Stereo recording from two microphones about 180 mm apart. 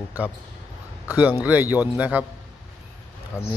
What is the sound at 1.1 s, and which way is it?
Speech, 10° right (ahead or behind).